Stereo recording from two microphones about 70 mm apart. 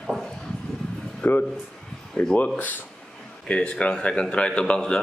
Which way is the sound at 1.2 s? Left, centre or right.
Left.